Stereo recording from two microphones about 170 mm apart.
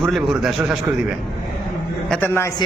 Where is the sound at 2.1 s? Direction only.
10° left (ahead or behind).